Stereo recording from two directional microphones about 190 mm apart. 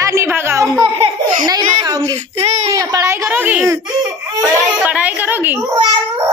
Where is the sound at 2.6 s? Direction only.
20° right (ahead or behind).